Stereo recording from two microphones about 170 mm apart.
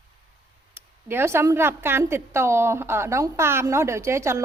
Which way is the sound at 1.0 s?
15° right (ahead or behind).